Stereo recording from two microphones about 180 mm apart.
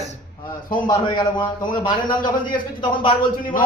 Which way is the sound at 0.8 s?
25° left (ahead or behind).